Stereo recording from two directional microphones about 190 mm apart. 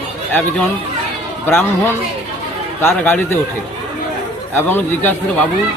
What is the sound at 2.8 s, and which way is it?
Speech, 10° left (ahead or behind).